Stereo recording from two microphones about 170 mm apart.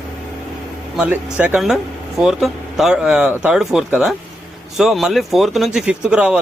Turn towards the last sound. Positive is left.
turn(degrees=-5)  # may be behind; listen again after turning